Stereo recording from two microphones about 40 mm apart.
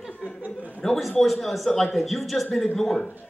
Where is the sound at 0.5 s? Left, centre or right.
Left.